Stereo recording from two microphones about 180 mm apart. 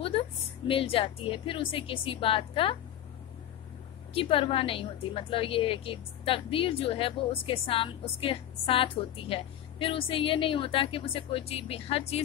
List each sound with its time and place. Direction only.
0.7 s a woman's voice: 30° left (ahead or behind)
4.1 s a woman's voice: 30° left (ahead or behind)